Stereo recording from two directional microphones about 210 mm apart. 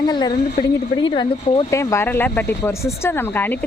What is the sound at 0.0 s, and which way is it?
A woman's voice, 20° left (ahead or behind).